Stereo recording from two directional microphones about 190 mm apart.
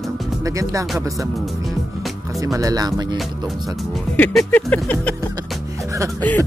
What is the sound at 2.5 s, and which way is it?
Speech, 20° right (ahead or behind).